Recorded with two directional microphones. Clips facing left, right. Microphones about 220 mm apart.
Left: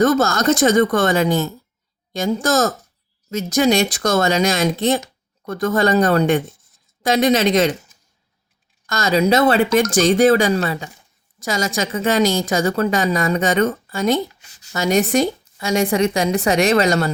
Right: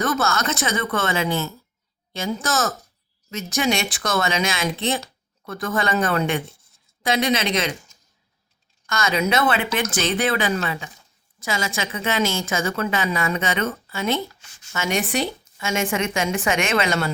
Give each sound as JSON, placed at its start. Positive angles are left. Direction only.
{"t": 0.0, "sound": "a woman's voice", "side_deg": 40}